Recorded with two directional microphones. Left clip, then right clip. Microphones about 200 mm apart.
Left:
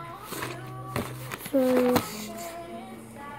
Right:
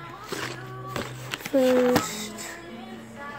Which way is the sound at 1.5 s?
Centre (ahead or behind).